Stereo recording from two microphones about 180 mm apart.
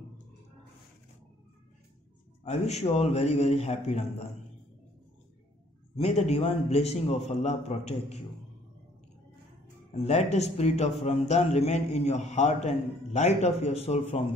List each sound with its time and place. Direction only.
2.4 s a man's voice: 40° left (ahead or behind)
5.9 s a man's voice: 35° left (ahead or behind)
10.0 s a man's voice: 35° left (ahead or behind)